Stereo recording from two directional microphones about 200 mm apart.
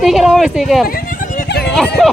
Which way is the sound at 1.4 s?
55° left (ahead or behind).